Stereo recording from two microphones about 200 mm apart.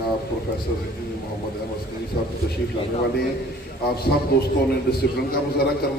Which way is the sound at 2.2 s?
45° left (ahead or behind).